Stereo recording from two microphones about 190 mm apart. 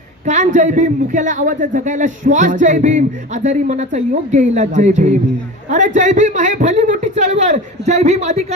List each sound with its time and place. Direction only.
0.3 s a man's voice: 40° right (ahead or behind)